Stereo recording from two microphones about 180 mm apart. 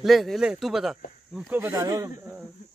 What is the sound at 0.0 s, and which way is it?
Speech, centre (ahead or behind).